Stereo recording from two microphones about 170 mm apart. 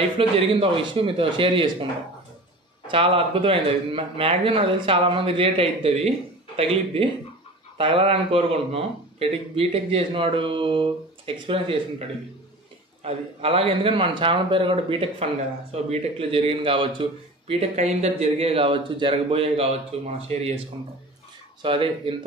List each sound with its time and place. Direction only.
0.4 s a man's voice: 30° right (ahead or behind)
2.9 s a man's voice: 30° right (ahead or behind)
13.0 s a man's voice: 35° right (ahead or behind)
21.6 s a man's voice: 30° right (ahead or behind)